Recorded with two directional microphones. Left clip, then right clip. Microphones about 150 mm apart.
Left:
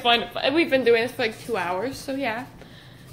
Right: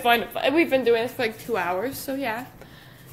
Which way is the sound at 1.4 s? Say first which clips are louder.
Right 1 dB; 15° right (ahead or behind).